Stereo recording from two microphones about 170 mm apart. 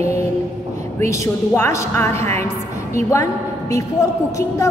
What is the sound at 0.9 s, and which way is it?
A woman's voice, 20° left (ahead or behind).